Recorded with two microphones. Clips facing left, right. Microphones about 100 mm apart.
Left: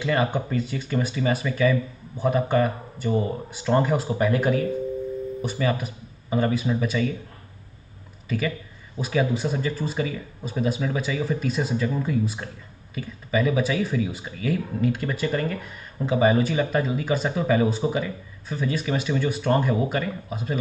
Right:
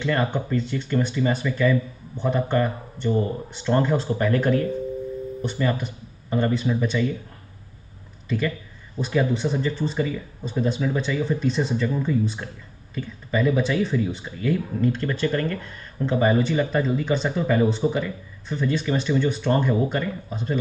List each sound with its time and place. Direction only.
0.0 s speech: 10° left (ahead or behind)
8.3 s speech: 5° left (ahead or behind)